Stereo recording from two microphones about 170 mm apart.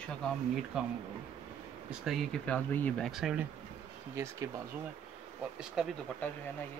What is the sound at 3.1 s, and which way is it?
Speech, 5° right (ahead or behind).